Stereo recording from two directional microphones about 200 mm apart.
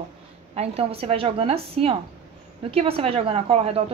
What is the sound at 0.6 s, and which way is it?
A woman's voice, 30° right (ahead or behind).